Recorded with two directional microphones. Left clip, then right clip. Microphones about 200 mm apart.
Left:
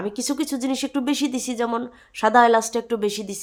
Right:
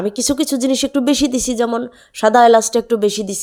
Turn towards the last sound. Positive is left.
turn(degrees=-25)  # may be behind; listen again after turning